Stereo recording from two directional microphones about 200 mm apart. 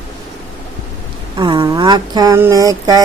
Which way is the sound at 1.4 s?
25° right (ahead or behind).